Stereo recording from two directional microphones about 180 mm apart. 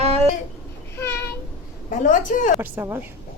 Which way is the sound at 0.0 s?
35° right (ahead or behind).